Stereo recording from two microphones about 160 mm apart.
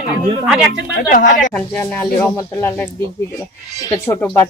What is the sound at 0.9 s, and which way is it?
Speech, 60° left (ahead or behind).